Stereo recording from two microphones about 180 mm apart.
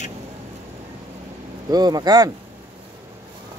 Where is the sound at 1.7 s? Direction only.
20° right (ahead or behind).